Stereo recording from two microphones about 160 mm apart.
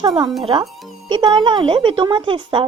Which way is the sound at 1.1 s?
30° right (ahead or behind).